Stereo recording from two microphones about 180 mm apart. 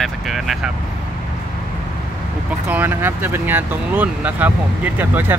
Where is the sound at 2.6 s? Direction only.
10° right (ahead or behind).